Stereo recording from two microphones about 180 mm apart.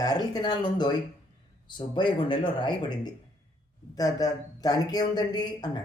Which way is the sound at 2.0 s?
25° left (ahead or behind).